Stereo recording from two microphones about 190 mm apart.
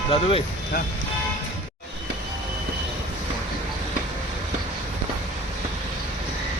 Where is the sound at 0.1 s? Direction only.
30° left (ahead or behind).